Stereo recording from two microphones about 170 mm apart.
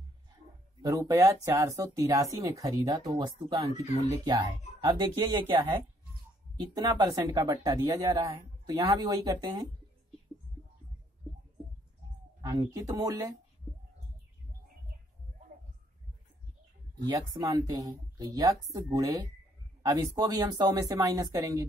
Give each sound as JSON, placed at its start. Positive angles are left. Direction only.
{"t": 0.8, "sound": "speech", "side_deg": -20}
{"t": 6.5, "sound": "speech", "side_deg": -20}
{"t": 12.4, "sound": "speech", "side_deg": -20}
{"t": 17.0, "sound": "speech", "side_deg": -25}